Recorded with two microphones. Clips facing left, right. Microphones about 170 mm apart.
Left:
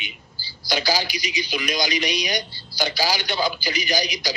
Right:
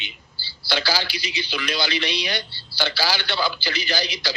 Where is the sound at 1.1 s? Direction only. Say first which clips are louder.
Left 2 dB; 30° right (ahead or behind).